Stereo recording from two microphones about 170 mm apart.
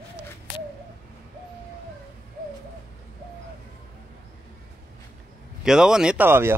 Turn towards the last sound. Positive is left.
turn(degrees=-15)  # may be behind; listen again after turning